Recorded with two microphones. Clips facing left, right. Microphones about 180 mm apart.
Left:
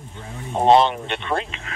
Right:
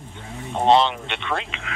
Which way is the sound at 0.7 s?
45° left (ahead or behind).